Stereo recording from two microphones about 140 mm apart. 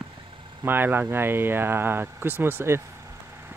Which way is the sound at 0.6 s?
15° right (ahead or behind).